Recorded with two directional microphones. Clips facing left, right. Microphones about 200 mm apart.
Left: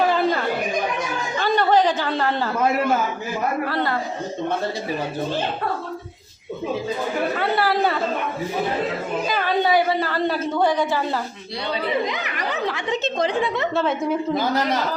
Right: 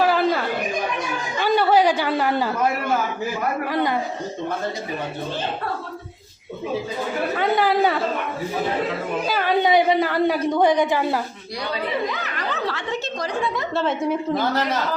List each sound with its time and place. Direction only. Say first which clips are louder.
0.0 s a sound: right 1 dB; 5° right (ahead or behind)
1.4 s chatter: right 1 dB; 10° right (ahead or behind)
3.7 s a woman's voice: right 2 dB; 15° right (ahead or behind)
7.3 s a woman's voice: right 5 dB; 15° right (ahead or behind)
9.2 s a woman's voice: right 1 dB; 10° right (ahead or behind)
12.0 s speech: even; 15° left (ahead or behind)
13.8 s a woman's voice: even; centre (ahead or behind)